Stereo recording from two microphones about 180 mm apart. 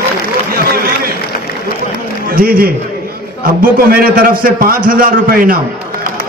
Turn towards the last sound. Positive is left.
turn(degrees=-55)  # may be behind; listen again after turning